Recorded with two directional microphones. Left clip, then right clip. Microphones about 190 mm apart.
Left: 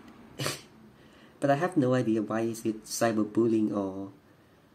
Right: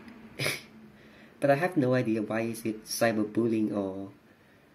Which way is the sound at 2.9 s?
5° left (ahead or behind).